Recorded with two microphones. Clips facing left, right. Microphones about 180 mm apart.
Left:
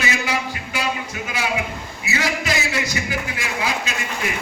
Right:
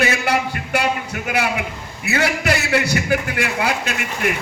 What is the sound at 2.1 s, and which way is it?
A man's voice, 60° right (ahead or behind).